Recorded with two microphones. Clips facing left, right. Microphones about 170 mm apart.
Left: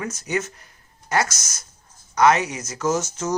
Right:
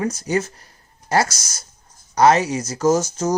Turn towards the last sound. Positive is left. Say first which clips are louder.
# right 5 dB
turn(degrees=-35)  # may be behind; listen again after turning